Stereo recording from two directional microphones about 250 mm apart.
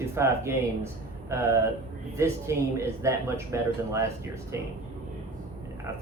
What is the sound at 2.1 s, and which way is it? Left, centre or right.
Speech, centre.